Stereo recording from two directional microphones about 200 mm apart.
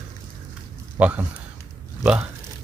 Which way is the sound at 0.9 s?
5° right (ahead or behind).